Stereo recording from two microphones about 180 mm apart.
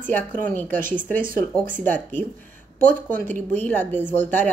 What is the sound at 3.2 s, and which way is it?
Speech, 10° left (ahead or behind).